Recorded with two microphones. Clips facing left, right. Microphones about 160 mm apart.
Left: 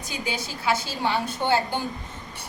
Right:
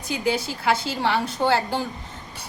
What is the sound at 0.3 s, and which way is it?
A woman's voice, 65° right (ahead or behind).